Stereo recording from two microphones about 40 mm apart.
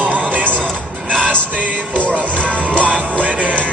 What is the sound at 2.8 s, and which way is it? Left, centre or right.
Music, right.